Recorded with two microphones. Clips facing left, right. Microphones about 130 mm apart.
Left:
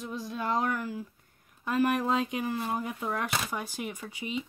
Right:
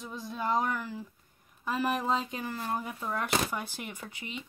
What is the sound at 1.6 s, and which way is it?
Speech, 5° right (ahead or behind).